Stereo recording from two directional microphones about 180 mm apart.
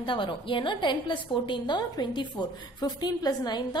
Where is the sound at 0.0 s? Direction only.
25° left (ahead or behind).